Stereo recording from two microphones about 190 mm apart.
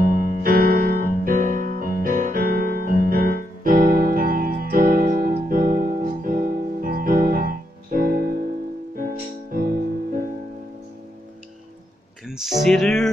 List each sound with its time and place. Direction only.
0.0 s music: 50° right (ahead or behind)
12.3 s speech: centre (ahead or behind)